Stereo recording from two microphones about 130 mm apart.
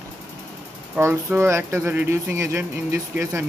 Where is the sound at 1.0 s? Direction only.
20° right (ahead or behind).